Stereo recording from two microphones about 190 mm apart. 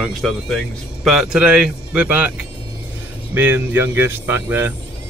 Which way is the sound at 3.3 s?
10° right (ahead or behind).